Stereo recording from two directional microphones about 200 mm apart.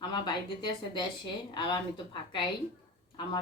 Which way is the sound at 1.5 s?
25° left (ahead or behind).